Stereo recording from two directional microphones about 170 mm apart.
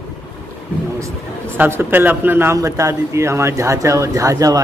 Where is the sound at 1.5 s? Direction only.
10° right (ahead or behind).